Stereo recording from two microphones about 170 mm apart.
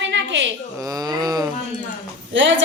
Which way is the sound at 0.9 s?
20° right (ahead or behind).